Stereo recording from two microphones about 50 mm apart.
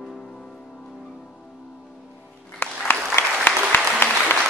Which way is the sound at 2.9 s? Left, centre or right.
Left.